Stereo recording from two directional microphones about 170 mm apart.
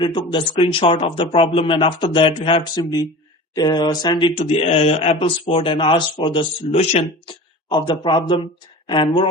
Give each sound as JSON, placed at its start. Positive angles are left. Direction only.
{"t": 0.0, "sound": "speech", "side_deg": 30}
{"t": 7.7, "sound": "speech", "side_deg": 25}